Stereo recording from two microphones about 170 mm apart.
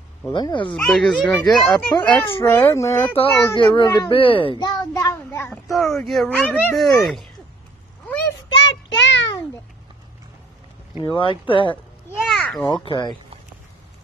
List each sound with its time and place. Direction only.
0.3 s speech: 30° left (ahead or behind)
0.7 s speech: 5° left (ahead or behind)
2.2 s speech: 15° left (ahead or behind)
3.2 s a child's voice: 30° left (ahead or behind); by 5.6 s 15° left (ahead or behind)
5.7 s speech: centre (ahead or behind)
8.5 s child singing: 90° left
11.0 s speech: 30° left (ahead or behind)
12.3 s a sound: 5° left (ahead or behind)
12.6 s speech: 25° left (ahead or behind)